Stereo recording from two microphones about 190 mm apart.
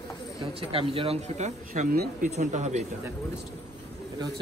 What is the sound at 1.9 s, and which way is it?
Speech, 55° right (ahead or behind).